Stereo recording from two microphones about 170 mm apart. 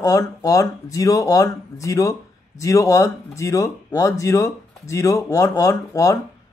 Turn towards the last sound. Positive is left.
turn(degrees=20)  # may be behind; listen again after turning